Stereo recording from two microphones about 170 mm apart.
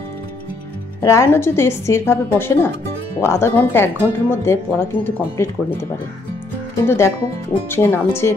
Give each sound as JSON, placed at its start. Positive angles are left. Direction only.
{"t": 1.0, "sound": "speech", "side_deg": 15}